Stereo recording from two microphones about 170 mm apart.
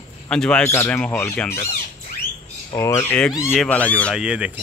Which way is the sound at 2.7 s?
20° left (ahead or behind).